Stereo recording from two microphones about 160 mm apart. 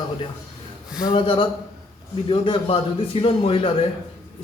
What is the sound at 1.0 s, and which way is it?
A man's voice, 30° left (ahead or behind).